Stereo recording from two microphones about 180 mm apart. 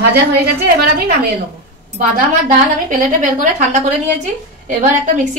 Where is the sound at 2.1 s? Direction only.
50° right (ahead or behind).